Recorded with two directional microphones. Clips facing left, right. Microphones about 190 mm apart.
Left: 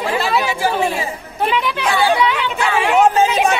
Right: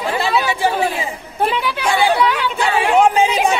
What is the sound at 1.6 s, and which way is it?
Speech, 5° right (ahead or behind).